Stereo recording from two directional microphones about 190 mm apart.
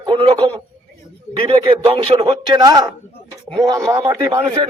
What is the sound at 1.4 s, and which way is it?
A man's voice, 25° right (ahead or behind).